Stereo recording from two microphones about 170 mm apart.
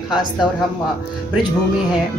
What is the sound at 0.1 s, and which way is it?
Speech, 25° left (ahead or behind).